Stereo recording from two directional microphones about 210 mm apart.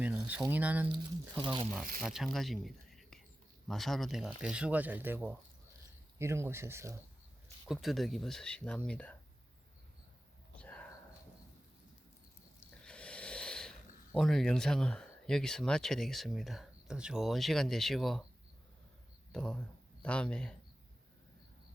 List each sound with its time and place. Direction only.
0.0 s speech: 5° right (ahead or behind)
0.9 s speech: 20° right (ahead or behind)
2.0 s speech: centre (ahead or behind)
7.7 s speech: centre (ahead or behind)
10.6 s whispering: 5° left (ahead or behind)
12.5 s speech: 5° left (ahead or behind)
19.3 s speech: 5° left (ahead or behind)